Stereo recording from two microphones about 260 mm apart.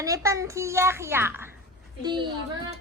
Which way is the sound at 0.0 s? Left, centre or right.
Centre.